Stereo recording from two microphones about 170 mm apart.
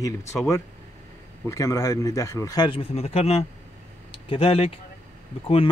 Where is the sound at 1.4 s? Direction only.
15° left (ahead or behind).